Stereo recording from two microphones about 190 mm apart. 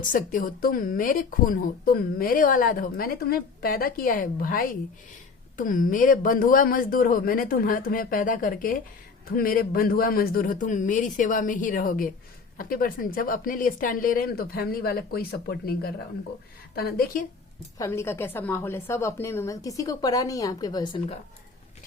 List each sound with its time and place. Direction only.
0.0 s speech: 45° left (ahead or behind)
17.7 s a woman's voice: 15° left (ahead or behind)